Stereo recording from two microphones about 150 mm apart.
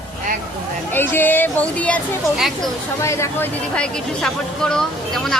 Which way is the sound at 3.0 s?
20° left (ahead or behind).